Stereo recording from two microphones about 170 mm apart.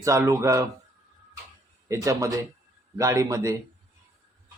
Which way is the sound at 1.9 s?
20° right (ahead or behind).